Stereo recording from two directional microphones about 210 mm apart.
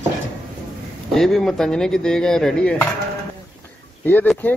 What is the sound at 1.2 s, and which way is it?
Speech, centre (ahead or behind).